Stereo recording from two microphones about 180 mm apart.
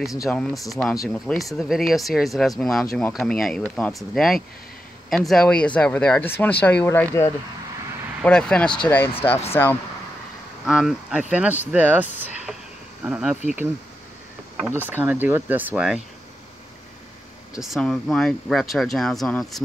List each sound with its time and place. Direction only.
0.1 s speech: 15° left (ahead or behind)
0.4 s speech: centre (ahead or behind)
10.6 s speech: centre (ahead or behind)
14.7 s speech: 10° right (ahead or behind)
17.6 s speech: centre (ahead or behind)